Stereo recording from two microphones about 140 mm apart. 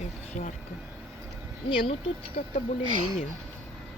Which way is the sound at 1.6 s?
40° left (ahead or behind).